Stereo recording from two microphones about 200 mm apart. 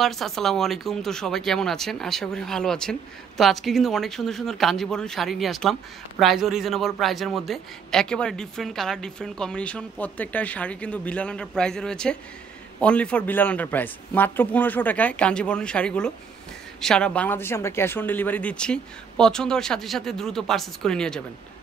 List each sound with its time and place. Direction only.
0.0 s speech: centre (ahead or behind)